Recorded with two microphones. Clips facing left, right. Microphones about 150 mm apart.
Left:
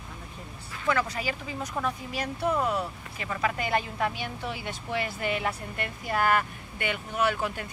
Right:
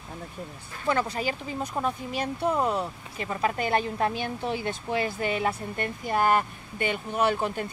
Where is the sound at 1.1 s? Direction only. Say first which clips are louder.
Right 3 dB; 30° right (ahead or behind).